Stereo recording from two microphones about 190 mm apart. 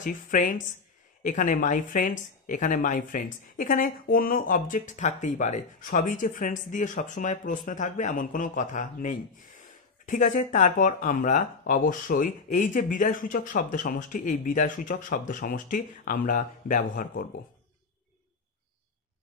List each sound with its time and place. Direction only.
0.0 s speech: 45° left (ahead or behind)